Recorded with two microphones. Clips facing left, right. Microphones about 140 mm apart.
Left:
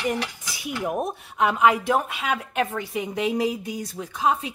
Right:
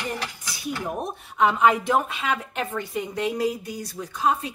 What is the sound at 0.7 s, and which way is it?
A woman's voice, 10° left (ahead or behind).